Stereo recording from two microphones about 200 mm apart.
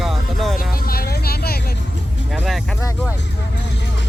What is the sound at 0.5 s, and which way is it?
Vehicle, 50° left (ahead or behind).